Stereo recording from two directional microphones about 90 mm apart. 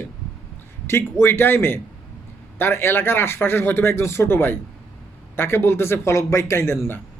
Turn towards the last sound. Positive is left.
turn(degrees=25)  # may be behind; listen again after turning